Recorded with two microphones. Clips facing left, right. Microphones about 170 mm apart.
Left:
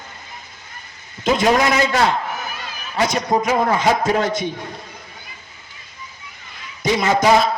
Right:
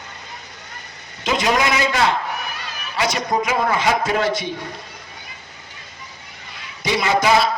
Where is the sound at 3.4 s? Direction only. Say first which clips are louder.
Left 1 dB; 45° left (ahead or behind).